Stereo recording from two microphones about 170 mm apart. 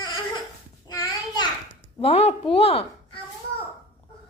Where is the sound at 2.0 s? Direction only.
35° left (ahead or behind).